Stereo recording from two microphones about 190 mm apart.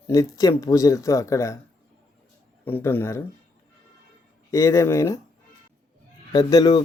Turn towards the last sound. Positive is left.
turn(degrees=20)  # may be behind; listen again after turning